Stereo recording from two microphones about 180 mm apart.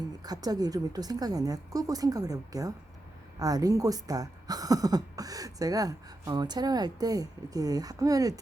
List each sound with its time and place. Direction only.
0.2 s speech: 20° right (ahead or behind)